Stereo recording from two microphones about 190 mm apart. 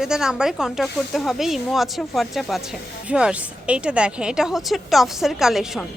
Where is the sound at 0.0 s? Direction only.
5° right (ahead or behind).